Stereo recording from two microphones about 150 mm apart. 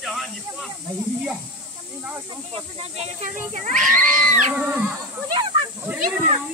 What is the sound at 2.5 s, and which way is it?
Speech, 40° right (ahead or behind).